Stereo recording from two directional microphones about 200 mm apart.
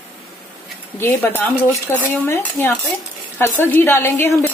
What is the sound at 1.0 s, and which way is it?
A woman's voice, 10° left (ahead or behind).